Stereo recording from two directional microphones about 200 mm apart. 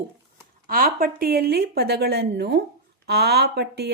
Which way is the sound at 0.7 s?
45° right (ahead or behind).